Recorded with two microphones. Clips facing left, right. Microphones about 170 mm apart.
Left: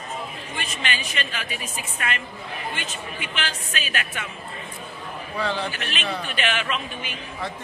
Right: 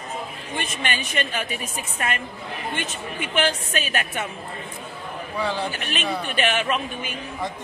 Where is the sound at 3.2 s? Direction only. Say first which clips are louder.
Right 10 dB; 50° right (ahead or behind).